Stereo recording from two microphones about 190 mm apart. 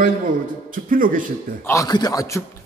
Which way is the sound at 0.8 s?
45° right (ahead or behind).